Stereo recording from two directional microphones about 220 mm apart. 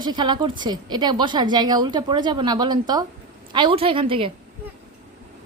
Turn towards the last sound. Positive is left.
turn(degrees=-25)  # may be behind; listen again after turning